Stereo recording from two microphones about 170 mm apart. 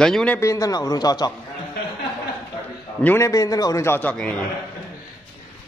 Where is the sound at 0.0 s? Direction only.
5° left (ahead or behind).